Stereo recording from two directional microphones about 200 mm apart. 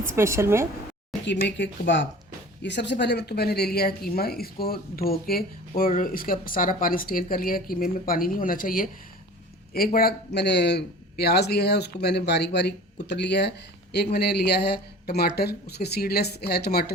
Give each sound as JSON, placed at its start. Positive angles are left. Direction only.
{"t": 0.2, "sound": "a woman's voice", "side_deg": -15}
{"t": 1.2, "sound": "speech", "side_deg": 60}